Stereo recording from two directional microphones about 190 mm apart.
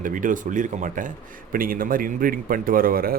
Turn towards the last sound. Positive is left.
turn(degrees=-50)  # may be behind; listen again after turning